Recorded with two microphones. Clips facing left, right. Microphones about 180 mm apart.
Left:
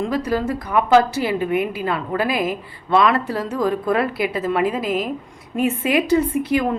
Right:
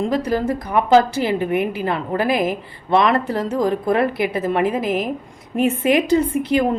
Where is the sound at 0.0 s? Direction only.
25° right (ahead or behind).